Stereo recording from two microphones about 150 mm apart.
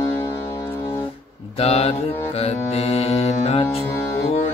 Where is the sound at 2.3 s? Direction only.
45° left (ahead or behind).